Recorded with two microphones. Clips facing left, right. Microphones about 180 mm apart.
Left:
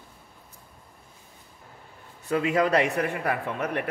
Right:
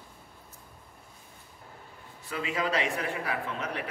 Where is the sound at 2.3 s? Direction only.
50° left (ahead or behind).